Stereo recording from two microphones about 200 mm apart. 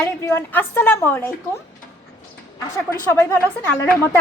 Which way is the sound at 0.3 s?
10° left (ahead or behind).